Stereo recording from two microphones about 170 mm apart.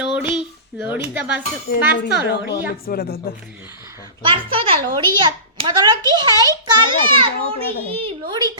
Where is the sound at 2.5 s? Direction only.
60° left (ahead or behind).